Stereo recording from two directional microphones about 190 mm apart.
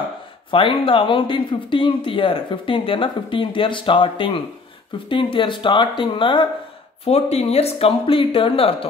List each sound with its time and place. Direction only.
0.5 s speech: 25° left (ahead or behind)